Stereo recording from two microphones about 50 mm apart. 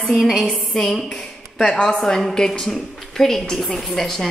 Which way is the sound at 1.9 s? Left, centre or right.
Centre.